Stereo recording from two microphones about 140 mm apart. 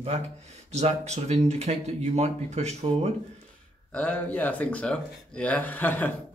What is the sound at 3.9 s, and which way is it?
Speech, 10° left (ahead or behind).